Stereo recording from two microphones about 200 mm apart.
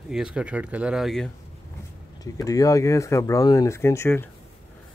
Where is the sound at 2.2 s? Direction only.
15° left (ahead or behind).